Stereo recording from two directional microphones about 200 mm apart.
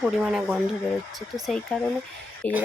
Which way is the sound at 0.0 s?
5° right (ahead or behind).